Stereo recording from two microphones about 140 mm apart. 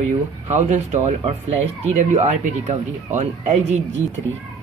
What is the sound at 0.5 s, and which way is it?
Speech, 55° right (ahead or behind).